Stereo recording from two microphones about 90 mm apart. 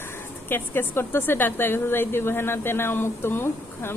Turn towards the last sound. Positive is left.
turn(degrees=25)  # may be behind; listen again after turning